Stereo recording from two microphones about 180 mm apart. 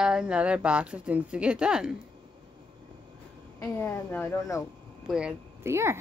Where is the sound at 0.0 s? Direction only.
5° right (ahead or behind).